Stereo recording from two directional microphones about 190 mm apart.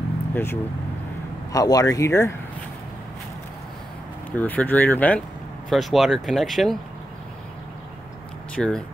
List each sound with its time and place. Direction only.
0.3 s speech: 10° left (ahead or behind)
4.4 s speech: 10° left (ahead or behind)
8.5 s speech: 5° left (ahead or behind)